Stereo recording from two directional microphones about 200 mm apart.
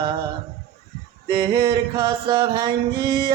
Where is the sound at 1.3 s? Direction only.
20° right (ahead or behind).